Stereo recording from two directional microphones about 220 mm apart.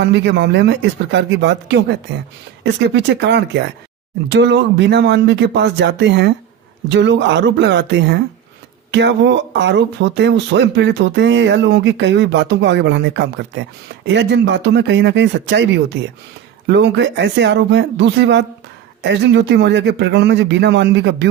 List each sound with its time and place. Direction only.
0.0 s speech: 55° right (ahead or behind)